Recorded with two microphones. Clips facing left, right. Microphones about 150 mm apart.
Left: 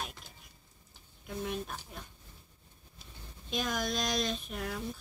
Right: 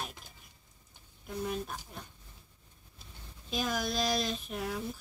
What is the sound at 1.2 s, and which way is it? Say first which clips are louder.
Speech: right 1 dB; centre (ahead or behind).